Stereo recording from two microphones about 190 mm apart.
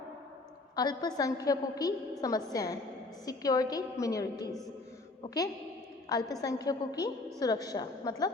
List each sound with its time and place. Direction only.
0.8 s a woman's voice: 20° left (ahead or behind)